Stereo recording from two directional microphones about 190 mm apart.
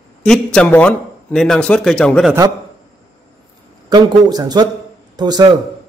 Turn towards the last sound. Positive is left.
turn(degrees=-20)  # may be behind; listen again after turning